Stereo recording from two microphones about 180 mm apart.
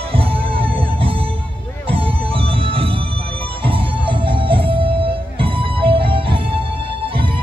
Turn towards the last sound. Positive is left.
turn(degrees=-30)  # may be behind; listen again after turning